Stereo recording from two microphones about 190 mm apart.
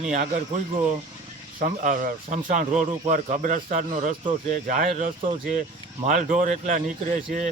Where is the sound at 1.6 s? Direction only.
45° right (ahead or behind).